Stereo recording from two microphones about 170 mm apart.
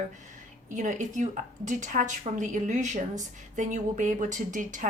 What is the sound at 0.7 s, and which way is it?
A woman's voice, 45° right (ahead or behind).